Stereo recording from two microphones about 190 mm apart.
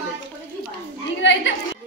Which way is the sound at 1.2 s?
70° left (ahead or behind).